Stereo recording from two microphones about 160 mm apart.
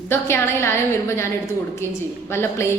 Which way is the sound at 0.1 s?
15° left (ahead or behind).